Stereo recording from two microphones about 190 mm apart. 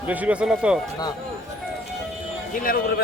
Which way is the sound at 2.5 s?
50° left (ahead or behind).